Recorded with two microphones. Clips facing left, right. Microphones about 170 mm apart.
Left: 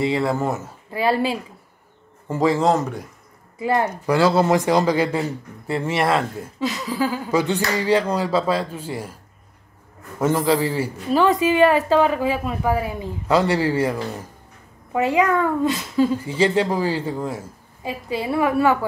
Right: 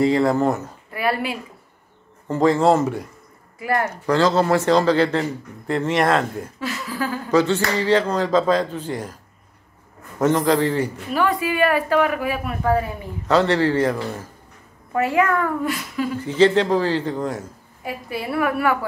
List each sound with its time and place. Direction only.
0.0 s speech: 5° left (ahead or behind)
0.9 s speech: 30° left (ahead or behind)
2.2 s speech: 5° left (ahead or behind)
3.5 s speech: 25° left (ahead or behind)
3.8 s speech: 10° left (ahead or behind)
6.6 s speech: 20° left (ahead or behind)
10.2 s speech: 5° left (ahead or behind)
11.1 s speech: 20° left (ahead or behind)
16.3 s speech: 10° left (ahead or behind)
17.8 s speech: 20° left (ahead or behind)